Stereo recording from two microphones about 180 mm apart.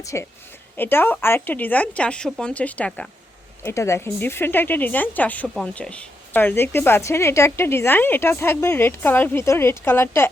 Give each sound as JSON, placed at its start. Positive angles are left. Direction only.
{"t": 0.0, "sound": "speech", "side_deg": 15}